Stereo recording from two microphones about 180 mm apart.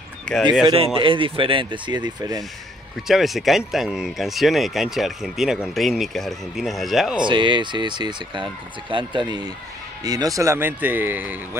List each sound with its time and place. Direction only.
0.2 s a sound: 5° left (ahead or behind)
1.0 s speech: 30° right (ahead or behind)
3.1 s speech: centre (ahead or behind)
7.2 s speech: 25° right (ahead or behind); by 11.3 s 10° right (ahead or behind)